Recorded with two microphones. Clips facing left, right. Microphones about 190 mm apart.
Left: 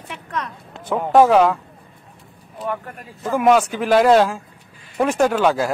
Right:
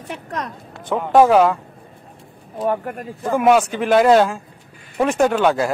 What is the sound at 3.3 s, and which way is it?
Speech, centre (ahead or behind).